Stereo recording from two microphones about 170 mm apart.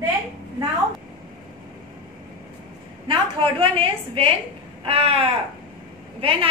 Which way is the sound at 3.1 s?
30° right (ahead or behind).